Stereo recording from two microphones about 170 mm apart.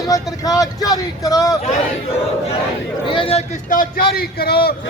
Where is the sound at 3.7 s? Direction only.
55° left (ahead or behind).